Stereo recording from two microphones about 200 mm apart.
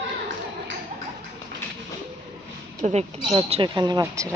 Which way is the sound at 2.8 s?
30° right (ahead or behind).